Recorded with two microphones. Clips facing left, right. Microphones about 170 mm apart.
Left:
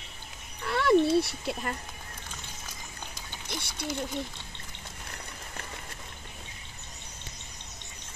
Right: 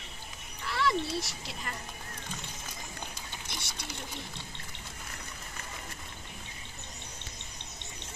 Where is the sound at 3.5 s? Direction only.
55° left (ahead or behind).